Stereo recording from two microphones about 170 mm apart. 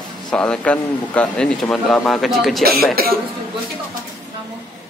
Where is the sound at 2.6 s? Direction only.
65° right (ahead or behind).